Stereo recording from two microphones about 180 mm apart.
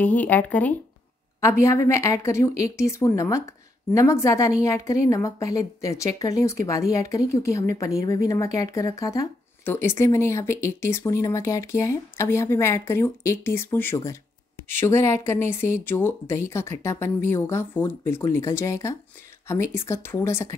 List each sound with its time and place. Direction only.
0.0 s speech: 10° left (ahead or behind)